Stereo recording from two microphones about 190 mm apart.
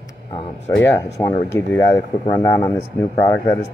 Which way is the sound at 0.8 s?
10° left (ahead or behind).